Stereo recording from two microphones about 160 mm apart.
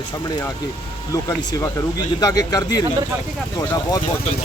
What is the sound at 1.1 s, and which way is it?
Speech, 20° left (ahead or behind).